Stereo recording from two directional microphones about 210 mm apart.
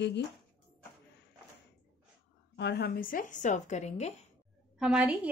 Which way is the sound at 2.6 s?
55° left (ahead or behind).